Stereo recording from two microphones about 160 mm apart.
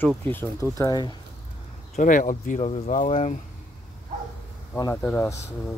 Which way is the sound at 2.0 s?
55° left (ahead or behind).